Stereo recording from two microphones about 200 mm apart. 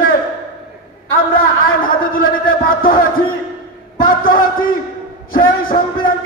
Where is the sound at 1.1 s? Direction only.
45° left (ahead or behind).